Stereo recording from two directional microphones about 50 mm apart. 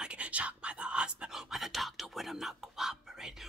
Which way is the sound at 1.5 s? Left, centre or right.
Centre.